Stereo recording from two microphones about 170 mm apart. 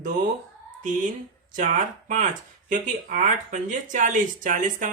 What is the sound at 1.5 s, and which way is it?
Speech, 50° right (ahead or behind).